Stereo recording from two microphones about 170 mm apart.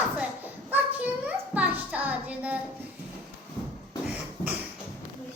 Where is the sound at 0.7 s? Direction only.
10° right (ahead or behind).